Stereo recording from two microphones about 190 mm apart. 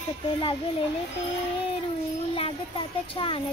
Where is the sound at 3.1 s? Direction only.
25° left (ahead or behind).